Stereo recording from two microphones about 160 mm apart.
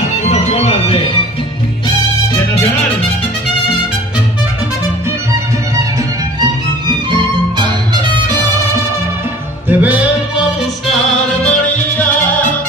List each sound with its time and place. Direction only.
0.2 s music: 45° left (ahead or behind)
6.4 s violin: 30° right (ahead or behind)
9.7 s music: 10° right (ahead or behind)